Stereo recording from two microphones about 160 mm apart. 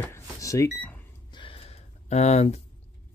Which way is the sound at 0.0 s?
20° left (ahead or behind).